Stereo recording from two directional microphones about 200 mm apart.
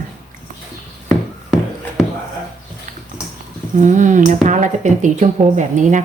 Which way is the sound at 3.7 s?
40° right (ahead or behind).